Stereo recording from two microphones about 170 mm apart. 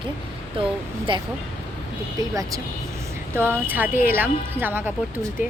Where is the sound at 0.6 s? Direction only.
30° right (ahead or behind).